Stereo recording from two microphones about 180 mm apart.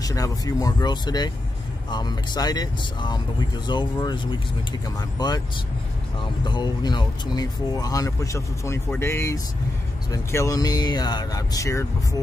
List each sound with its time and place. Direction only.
0.0 s speech: 20° left (ahead or behind)
6.4 s speech: 25° left (ahead or behind)